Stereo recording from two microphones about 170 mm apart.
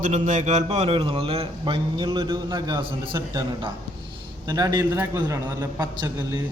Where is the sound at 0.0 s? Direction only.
45° right (ahead or behind).